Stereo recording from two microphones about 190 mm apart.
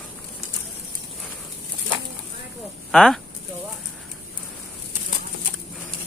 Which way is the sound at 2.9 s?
Centre (ahead or behind).